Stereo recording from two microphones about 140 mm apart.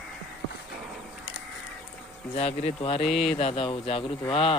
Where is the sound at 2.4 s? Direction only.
45° left (ahead or behind).